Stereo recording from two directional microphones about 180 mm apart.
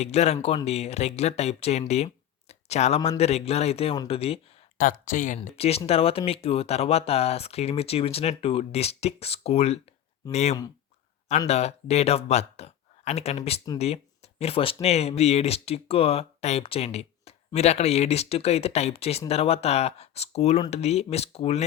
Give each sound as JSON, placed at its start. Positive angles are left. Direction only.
{"t": 0.0, "sound": "speech", "side_deg": 35}
{"t": 4.8, "sound": "speech", "side_deg": 45}
{"t": 5.4, "sound": "speech", "side_deg": 35}